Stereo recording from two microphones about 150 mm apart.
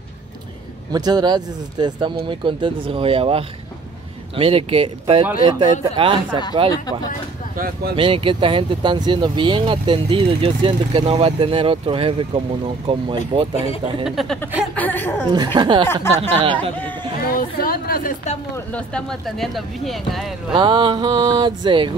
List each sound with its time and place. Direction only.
0.9 s speech: 25° right (ahead or behind)
7.5 s speech: 75° right (ahead or behind)
7.9 s speech: 35° right (ahead or behind)
14.0 s a woman's voice: centre (ahead or behind)
15.3 s speech: 30° right (ahead or behind)
15.9 s a woman's voice: 15° left (ahead or behind)
16.2 s speech: 40° right (ahead or behind)
17.3 s a woman's voice: 75° left (ahead or behind)
18.7 s speech: 5° left (ahead or behind)
20.5 s speech: 35° right (ahead or behind)